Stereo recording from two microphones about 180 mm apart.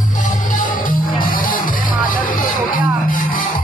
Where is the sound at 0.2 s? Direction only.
45° left (ahead or behind).